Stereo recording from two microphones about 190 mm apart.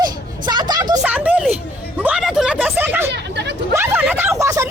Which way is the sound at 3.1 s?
65° right (ahead or behind).